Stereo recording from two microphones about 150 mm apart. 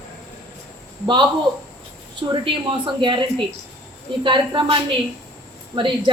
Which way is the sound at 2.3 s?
35° right (ahead or behind).